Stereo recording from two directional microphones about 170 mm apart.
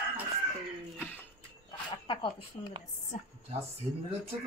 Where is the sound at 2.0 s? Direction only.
30° left (ahead or behind).